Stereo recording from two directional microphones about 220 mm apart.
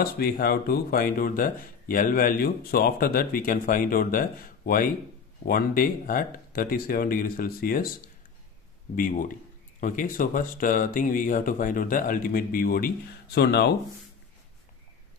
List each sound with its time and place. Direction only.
0.0 s speech: 45° left (ahead or behind)
8.9 s speech: 40° left (ahead or behind)